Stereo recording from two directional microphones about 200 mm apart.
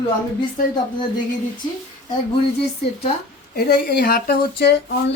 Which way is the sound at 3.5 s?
50° left (ahead or behind).